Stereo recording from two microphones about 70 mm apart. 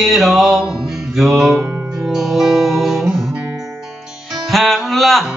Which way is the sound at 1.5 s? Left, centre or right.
Right.